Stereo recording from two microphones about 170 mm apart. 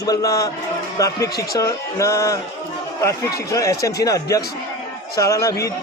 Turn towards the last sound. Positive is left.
turn(degrees=20)  # may be behind; listen again after turning